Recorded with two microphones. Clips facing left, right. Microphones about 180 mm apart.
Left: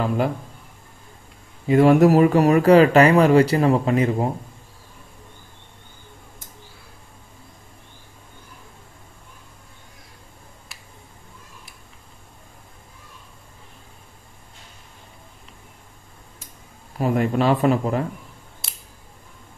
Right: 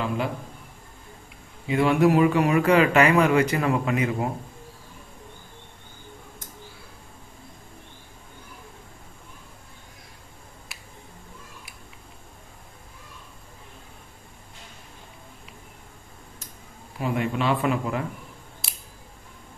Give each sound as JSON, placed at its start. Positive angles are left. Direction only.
{"t": 1.7, "sound": "speech", "side_deg": 40}
{"t": 17.0, "sound": "speech", "side_deg": 40}
{"t": 18.6, "sound": "scissors", "side_deg": 0}